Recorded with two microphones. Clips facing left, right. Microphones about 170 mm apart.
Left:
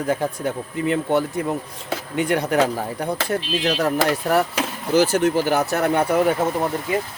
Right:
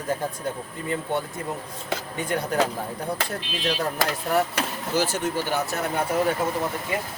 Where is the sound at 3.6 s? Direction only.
75° left (ahead or behind).